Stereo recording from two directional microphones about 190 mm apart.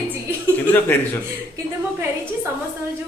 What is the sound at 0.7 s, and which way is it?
Speech, 10° left (ahead or behind).